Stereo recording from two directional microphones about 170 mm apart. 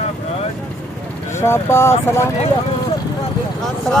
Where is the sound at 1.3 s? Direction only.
15° left (ahead or behind).